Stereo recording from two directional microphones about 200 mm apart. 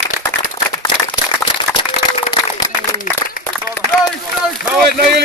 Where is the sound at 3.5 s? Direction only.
5° left (ahead or behind).